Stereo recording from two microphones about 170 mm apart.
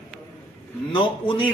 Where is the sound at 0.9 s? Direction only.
30° left (ahead or behind).